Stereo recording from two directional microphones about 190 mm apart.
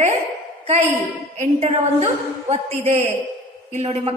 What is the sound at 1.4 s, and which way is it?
A woman's voice, 35° right (ahead or behind).